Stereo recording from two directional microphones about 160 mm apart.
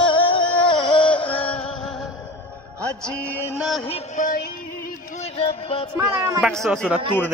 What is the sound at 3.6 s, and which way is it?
Speech, centre (ahead or behind).